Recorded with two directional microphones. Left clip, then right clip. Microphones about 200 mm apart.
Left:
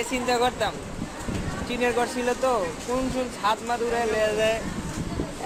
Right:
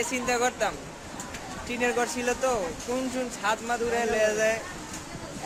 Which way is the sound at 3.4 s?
20° right (ahead or behind).